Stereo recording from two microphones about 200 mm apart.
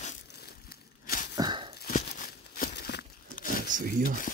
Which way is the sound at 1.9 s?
40° left (ahead or behind).